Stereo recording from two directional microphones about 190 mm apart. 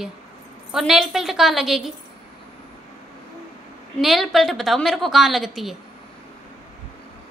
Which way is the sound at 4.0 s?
Centre (ahead or behind).